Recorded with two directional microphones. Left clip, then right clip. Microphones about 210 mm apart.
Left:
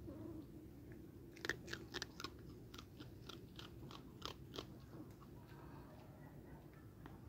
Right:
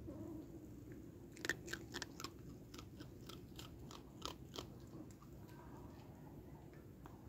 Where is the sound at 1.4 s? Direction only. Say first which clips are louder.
Right 2 dB; 5° right (ahead or behind).